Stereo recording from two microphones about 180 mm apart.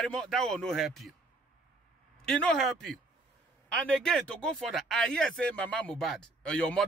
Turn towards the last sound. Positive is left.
turn(degrees=5)  # may be behind; listen again after turning